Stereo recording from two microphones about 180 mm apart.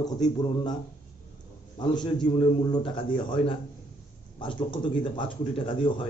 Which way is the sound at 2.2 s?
25° left (ahead or behind).